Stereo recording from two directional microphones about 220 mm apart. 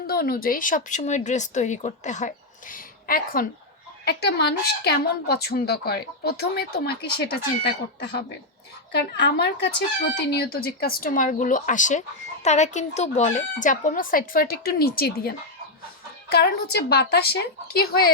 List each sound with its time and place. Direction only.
0.1 s a woman's voice: 45° left (ahead or behind)